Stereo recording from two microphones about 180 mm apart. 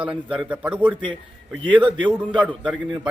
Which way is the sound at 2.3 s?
5° right (ahead or behind).